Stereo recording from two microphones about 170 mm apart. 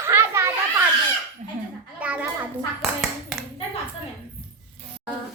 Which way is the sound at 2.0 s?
10° right (ahead or behind).